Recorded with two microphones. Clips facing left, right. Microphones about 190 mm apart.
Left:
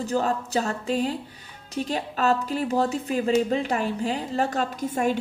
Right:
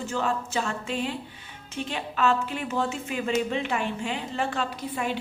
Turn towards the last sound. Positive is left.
turn(degrees=45)  # may be behind; listen again after turning